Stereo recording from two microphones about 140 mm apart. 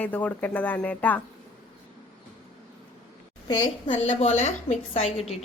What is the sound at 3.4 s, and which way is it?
Speech, 30° left (ahead or behind).